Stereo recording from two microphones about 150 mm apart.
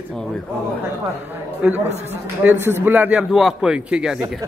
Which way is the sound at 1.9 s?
45° right (ahead or behind).